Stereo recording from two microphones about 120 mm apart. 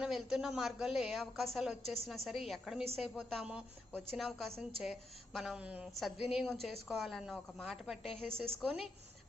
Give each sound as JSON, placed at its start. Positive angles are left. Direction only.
{"t": 0.0, "sound": "a woman's voice", "side_deg": -5}